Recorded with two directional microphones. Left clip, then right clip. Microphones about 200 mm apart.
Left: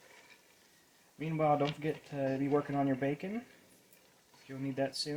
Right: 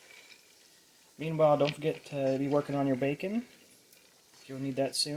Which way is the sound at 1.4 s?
45° right (ahead or behind).